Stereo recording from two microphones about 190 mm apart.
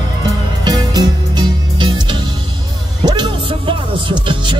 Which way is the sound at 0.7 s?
20° right (ahead or behind).